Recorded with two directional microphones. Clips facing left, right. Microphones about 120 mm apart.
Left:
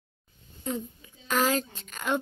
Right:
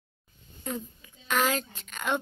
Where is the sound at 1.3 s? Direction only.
30° left (ahead or behind).